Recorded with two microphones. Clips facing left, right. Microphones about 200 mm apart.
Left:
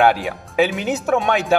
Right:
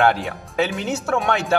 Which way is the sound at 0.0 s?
15° left (ahead or behind).